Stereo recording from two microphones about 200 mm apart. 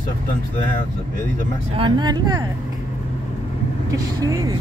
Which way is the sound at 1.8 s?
20° right (ahead or behind).